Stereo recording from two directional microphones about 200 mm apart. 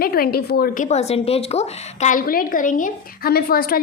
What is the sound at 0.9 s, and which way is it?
A woman's voice, 30° left (ahead or behind).